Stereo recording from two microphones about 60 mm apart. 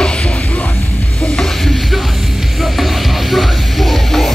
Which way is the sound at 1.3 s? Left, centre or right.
Centre.